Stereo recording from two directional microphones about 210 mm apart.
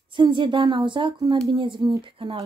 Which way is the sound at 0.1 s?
25° right (ahead or behind).